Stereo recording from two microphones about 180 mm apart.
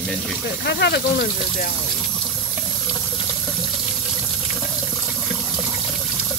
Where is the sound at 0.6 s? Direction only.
65° left (ahead or behind).